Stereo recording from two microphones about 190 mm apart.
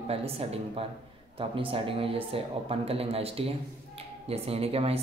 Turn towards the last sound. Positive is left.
turn(degrees=-30)  # may be behind; listen again after turning